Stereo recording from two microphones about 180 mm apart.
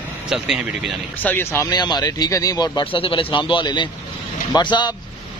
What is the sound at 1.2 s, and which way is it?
Speech, 10° left (ahead or behind).